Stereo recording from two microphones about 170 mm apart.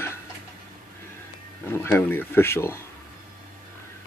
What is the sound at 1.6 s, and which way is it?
Speech, 15° left (ahead or behind).